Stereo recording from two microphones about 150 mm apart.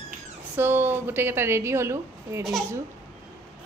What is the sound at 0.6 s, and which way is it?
A woman's voice, 15° right (ahead or behind).